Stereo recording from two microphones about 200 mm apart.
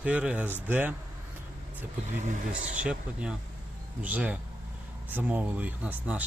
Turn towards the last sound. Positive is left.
turn(degrees=-5)  # may be behind; listen again after turning